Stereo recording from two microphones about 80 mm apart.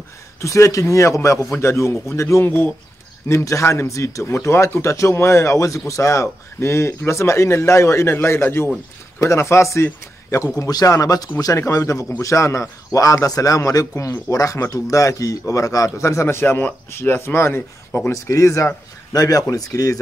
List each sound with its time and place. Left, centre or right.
0.4 s a man's voice: left
2.4 s speech: left
3.3 s a man's voice: left
18.1 s a man's voice: left